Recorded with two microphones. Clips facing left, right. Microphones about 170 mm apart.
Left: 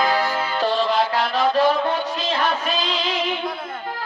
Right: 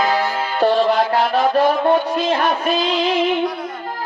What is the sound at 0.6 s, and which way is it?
Music, 55° right (ahead or behind).